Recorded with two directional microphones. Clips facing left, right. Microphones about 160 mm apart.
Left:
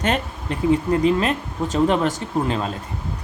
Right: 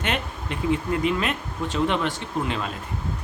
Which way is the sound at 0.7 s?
35° left (ahead or behind).